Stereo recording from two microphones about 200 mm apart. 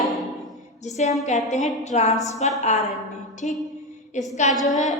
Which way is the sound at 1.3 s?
35° left (ahead or behind).